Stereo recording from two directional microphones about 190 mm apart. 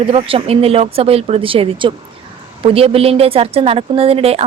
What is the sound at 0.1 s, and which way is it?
Speech, 30° right (ahead or behind).